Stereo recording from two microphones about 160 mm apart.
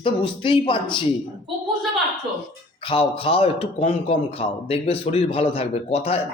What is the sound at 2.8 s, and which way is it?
A man's voice, 35° left (ahead or behind).